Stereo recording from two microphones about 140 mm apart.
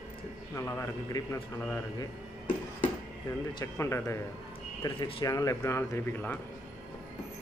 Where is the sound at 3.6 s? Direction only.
20° left (ahead or behind).